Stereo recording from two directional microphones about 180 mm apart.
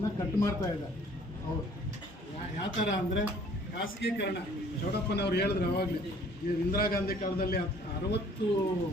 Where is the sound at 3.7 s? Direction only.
70° left (ahead or behind).